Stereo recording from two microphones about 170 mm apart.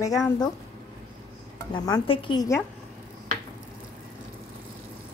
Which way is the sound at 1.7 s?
25° left (ahead or behind).